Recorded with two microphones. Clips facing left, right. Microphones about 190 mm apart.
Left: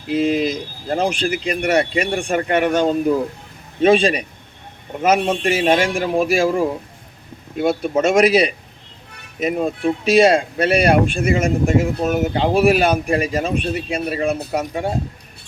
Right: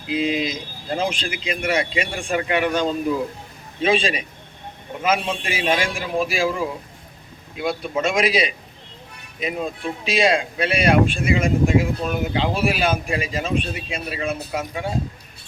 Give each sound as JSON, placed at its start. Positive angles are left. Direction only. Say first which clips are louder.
{"t": 0.1, "sound": "speech", "louder": "left 5 dB", "side_deg": 45}
{"t": 9.4, "sound": "speech", "louder": "left 7 dB", "side_deg": 45}